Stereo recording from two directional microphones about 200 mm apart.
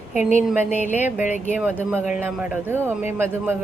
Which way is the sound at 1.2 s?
35° left (ahead or behind).